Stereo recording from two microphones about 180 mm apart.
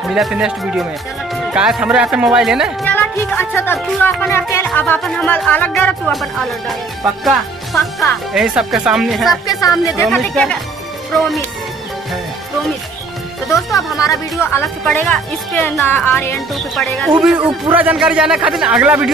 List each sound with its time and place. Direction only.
0.1 s speech: 5° right (ahead or behind)
2.8 s speech: 10° left (ahead or behind)
13.9 s speech: 20° left (ahead or behind); by 19.1 s 5° right (ahead or behind)